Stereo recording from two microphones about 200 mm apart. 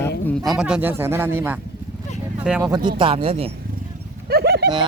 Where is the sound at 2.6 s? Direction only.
20° right (ahead or behind).